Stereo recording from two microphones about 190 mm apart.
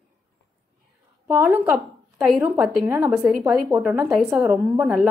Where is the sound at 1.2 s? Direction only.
15° right (ahead or behind).